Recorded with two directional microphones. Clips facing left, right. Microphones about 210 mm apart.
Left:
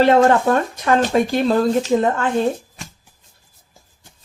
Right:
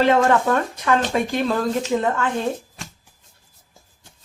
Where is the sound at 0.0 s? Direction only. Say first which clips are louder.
Left 4 dB; 35° left (ahead or behind).